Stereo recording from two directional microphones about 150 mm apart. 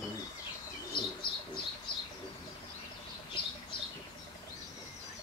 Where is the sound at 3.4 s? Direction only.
30° left (ahead or behind).